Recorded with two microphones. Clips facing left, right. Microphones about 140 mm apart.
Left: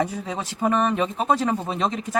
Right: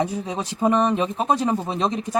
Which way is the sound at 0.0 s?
20° right (ahead or behind).